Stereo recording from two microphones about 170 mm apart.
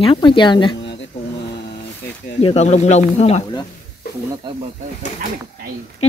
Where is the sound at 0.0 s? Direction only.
30° left (ahead or behind).